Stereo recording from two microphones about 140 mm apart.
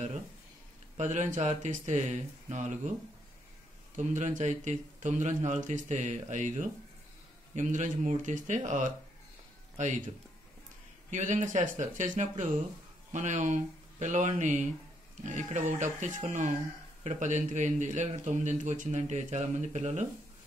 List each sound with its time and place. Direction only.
0.9 s a man's voice: 55° right (ahead or behind)
3.9 s a man's voice: 60° right (ahead or behind)